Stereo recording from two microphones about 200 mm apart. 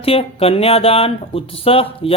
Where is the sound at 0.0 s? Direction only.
30° left (ahead or behind).